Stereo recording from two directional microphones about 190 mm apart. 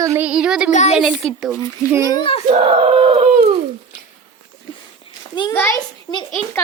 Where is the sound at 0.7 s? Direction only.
40° left (ahead or behind).